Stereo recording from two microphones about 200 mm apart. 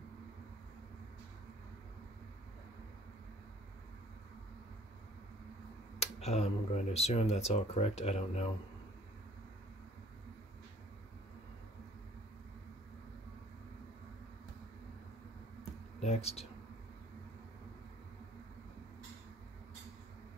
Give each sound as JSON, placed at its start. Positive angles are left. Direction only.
{"t": 6.2, "sound": "speech", "side_deg": 30}
{"t": 16.0, "sound": "speech", "side_deg": 30}